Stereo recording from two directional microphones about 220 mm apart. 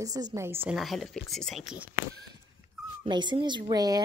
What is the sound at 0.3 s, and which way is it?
A woman's voice, 10° right (ahead or behind).